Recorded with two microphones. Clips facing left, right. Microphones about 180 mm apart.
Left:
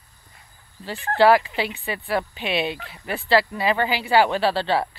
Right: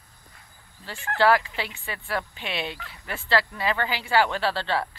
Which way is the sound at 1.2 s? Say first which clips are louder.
Left 5 dB; 15° left (ahead or behind).